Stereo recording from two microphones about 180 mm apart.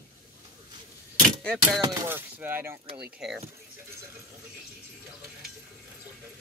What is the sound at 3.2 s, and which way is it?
Speech, centre (ahead or behind).